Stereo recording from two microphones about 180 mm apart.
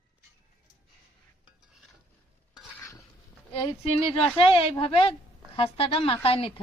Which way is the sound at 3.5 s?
30° left (ahead or behind).